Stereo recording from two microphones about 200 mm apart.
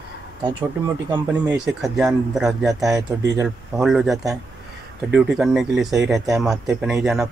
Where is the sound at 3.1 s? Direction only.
15° right (ahead or behind).